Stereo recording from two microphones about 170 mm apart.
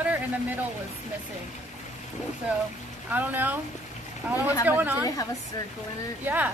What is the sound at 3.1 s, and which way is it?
Speech, 10° right (ahead or behind).